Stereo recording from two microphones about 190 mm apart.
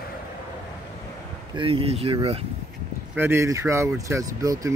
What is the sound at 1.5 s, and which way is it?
Speech, 30° right (ahead or behind).